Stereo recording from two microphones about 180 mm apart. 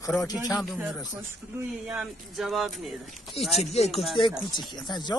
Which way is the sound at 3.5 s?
35° left (ahead or behind).